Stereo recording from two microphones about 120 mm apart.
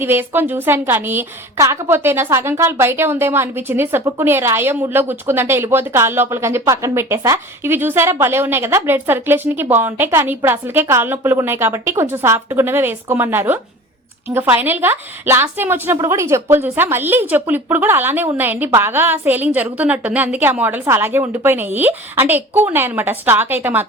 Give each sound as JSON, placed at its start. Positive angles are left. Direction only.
{"t": 0.0, "sound": "a woman's voice", "side_deg": -20}